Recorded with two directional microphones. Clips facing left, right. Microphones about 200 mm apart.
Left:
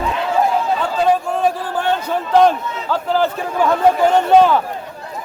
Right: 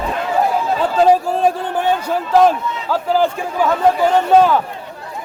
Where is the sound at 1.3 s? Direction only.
30° right (ahead or behind).